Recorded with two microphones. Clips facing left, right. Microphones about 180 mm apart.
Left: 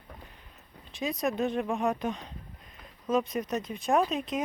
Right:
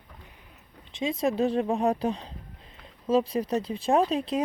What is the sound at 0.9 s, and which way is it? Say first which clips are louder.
Speech: right 4 dB; 25° right (ahead or behind).